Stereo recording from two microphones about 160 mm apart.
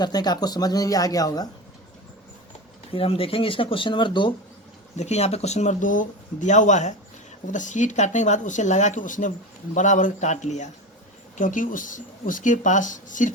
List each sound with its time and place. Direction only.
0.0 s speech: 25° left (ahead or behind)
2.9 s speech: 35° left (ahead or behind)
4.9 s speech: 40° left (ahead or behind)